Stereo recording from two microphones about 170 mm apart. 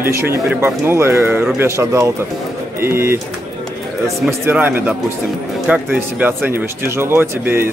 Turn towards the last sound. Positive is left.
turn(degrees=-10)  # may be behind; listen again after turning